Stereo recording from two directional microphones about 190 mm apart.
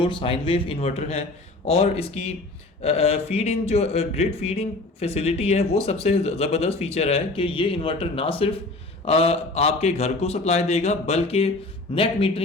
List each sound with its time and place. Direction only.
0.0 s speech: 25° left (ahead or behind)